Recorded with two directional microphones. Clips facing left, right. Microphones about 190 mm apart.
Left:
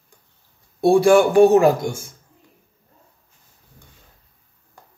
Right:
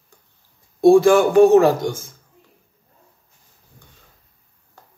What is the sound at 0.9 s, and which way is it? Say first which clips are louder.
A man's voice: right 1 dB; 15° left (ahead or behind).